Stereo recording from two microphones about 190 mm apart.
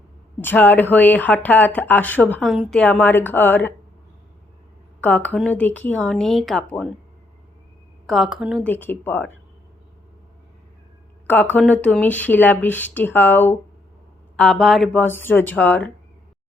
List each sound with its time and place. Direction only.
0.4 s speech: 10° left (ahead or behind)
5.0 s speech: 10° left (ahead or behind)
8.0 s a woman's voice: centre (ahead or behind)
8.6 s speech: 10° left (ahead or behind)
11.3 s speech: 10° left (ahead or behind)